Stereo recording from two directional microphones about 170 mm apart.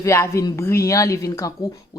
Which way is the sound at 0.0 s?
15° left (ahead or behind).